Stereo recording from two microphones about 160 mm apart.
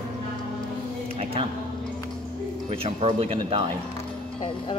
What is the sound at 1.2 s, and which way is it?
Speech, 35° right (ahead or behind).